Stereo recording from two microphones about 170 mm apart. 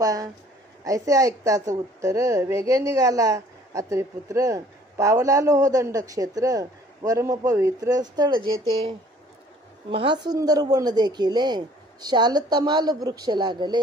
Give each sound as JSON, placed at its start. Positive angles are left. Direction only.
{"t": 0.0, "sound": "a woman's voice", "side_deg": -20}
{"t": 9.8, "sound": "a woman's voice", "side_deg": -30}